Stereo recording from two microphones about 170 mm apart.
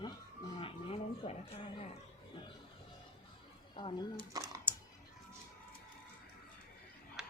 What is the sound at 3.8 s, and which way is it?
Speech, 30° left (ahead or behind).